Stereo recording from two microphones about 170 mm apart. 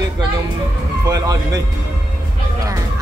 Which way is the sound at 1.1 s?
20° right (ahead or behind).